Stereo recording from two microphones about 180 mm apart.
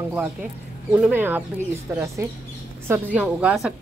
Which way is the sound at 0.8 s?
10° right (ahead or behind).